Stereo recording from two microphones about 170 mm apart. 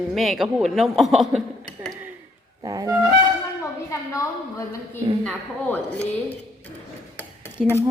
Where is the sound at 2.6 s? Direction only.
20° right (ahead or behind).